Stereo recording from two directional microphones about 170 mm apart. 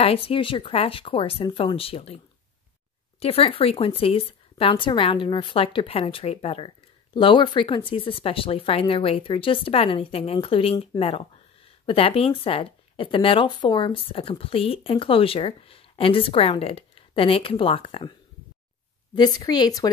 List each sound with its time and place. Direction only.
0.0 s speech: 35° left (ahead or behind)
3.2 s speech: 35° left (ahead or behind)
19.1 s a woman's voice: 25° left (ahead or behind)